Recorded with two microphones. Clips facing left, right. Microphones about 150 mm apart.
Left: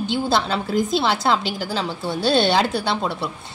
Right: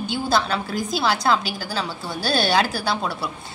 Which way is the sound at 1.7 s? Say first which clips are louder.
Left 2 dB; 25° left (ahead or behind).